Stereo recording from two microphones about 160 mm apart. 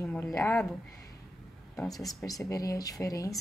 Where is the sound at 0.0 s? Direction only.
15° left (ahead or behind).